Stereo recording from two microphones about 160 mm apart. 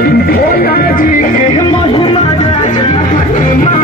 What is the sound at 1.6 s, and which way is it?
Speech, 35° left (ahead or behind).